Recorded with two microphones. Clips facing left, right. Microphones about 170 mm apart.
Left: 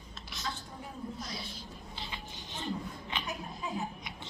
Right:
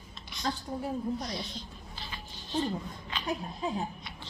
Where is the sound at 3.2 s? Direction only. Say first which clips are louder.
Right 6 dB; 30° right (ahead or behind).